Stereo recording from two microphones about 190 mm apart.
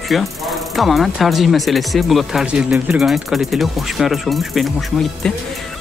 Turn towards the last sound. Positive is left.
turn(degrees=0)  # may be behind; listen again after turning